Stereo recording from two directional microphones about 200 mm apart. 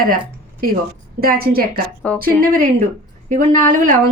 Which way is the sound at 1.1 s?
50° right (ahead or behind).